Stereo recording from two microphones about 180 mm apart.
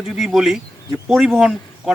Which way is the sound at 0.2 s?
Centre (ahead or behind).